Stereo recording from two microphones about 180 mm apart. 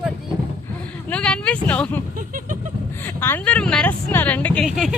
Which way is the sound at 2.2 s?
50° right (ahead or behind).